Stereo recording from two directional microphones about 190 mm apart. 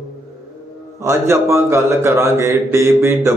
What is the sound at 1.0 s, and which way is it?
Speech, 15° right (ahead or behind).